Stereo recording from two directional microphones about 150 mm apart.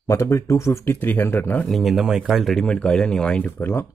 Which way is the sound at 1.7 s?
Centre (ahead or behind).